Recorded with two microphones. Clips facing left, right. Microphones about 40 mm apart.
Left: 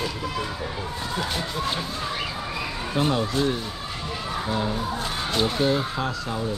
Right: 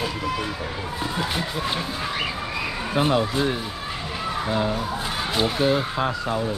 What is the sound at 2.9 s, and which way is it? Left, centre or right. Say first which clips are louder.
Speech: right 2 dB; centre.